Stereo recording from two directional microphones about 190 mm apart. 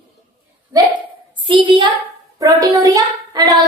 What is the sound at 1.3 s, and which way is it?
A woman's voice, 25° right (ahead or behind).